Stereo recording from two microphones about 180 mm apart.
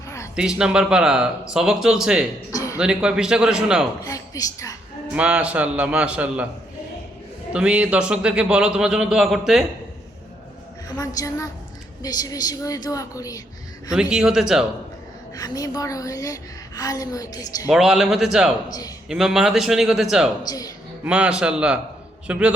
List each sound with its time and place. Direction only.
0.3 s a man's voice: 5° right (ahead or behind)
2.5 s a sound: 20° left (ahead or behind)
2.7 s a man's voice: 5° right (ahead or behind)
4.0 s a woman's voice: 20° left (ahead or behind)
5.1 s a man's voice: 5° right (ahead or behind)
7.5 s a man's voice: 5° right (ahead or behind)
10.9 s a woman's voice: 20° left (ahead or behind)
13.9 s a man's voice: 5° right (ahead or behind)
15.4 s a woman's voice: 20° left (ahead or behind)
17.7 s a man's voice: 5° right (ahead or behind)
20.5 s a woman's voice: 20° left (ahead or behind)
21.0 s a man's voice: 5° right (ahead or behind)